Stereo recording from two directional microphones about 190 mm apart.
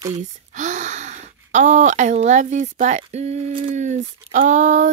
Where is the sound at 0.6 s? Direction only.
40° right (ahead or behind).